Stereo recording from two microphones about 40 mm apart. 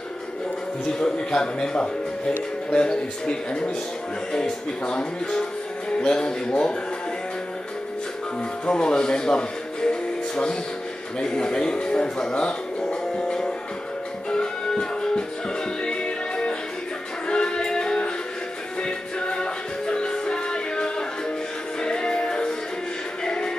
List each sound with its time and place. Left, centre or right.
0.9 s speech: centre
8.6 s music: centre